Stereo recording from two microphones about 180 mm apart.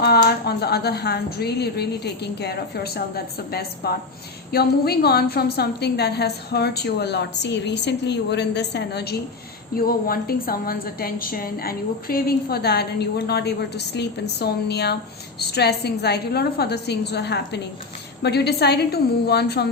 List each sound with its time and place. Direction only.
0.3 s a woman's voice: 65° left (ahead or behind)
9.7 s a woman's voice: 55° left (ahead or behind)